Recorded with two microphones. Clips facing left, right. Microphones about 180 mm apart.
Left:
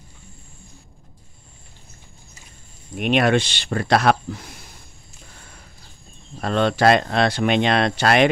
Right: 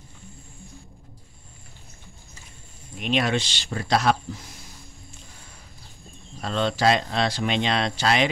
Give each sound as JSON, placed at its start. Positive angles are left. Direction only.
{"t": 3.0, "sound": "speech", "side_deg": 60}
{"t": 6.4, "sound": "speech", "side_deg": 60}